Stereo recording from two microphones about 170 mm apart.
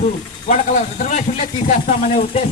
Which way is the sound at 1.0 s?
45° left (ahead or behind).